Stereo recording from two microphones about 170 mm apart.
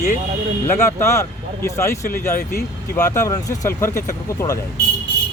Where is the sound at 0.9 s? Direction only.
15° left (ahead or behind).